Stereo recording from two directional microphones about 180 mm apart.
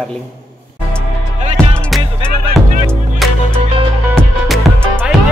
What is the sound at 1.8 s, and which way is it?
Music, 5° left (ahead or behind).